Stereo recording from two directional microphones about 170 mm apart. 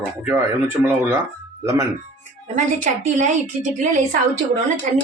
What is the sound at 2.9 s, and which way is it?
Speech, 50° right (ahead or behind).